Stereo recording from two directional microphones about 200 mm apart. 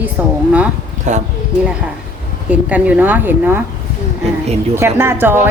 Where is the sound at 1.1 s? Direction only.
35° right (ahead or behind).